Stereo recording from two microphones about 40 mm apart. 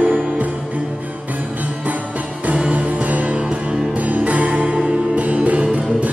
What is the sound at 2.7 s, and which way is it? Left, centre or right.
Music, right.